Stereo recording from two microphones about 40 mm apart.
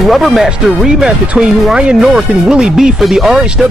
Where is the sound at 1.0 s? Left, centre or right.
Right.